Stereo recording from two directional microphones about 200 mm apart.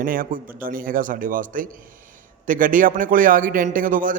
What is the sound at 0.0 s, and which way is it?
A man's voice, 45° right (ahead or behind).